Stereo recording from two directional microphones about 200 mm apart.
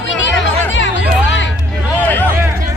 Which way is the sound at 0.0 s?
65° left (ahead or behind).